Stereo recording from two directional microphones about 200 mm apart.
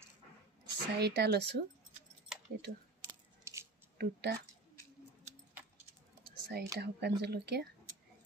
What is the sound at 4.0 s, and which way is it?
Speech, 55° right (ahead or behind).